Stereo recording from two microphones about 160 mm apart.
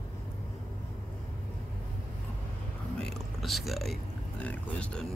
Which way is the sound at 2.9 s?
5° left (ahead or behind).